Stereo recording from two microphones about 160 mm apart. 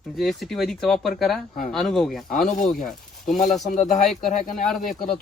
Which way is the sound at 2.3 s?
55° left (ahead or behind).